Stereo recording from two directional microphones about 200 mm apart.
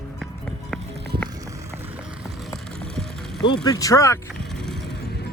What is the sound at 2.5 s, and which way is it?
Music, centre (ahead or behind).